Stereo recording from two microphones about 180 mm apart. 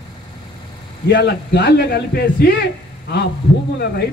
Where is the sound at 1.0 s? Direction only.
65° left (ahead or behind).